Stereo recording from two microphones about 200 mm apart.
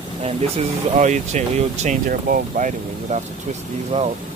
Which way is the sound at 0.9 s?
35° right (ahead or behind).